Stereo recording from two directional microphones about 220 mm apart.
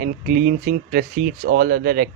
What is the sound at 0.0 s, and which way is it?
Speech, 40° right (ahead or behind).